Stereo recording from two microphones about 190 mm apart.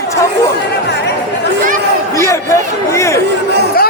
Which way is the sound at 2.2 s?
15° left (ahead or behind).